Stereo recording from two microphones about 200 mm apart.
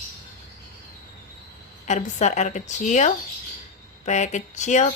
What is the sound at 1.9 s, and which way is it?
Speech, 35° left (ahead or behind).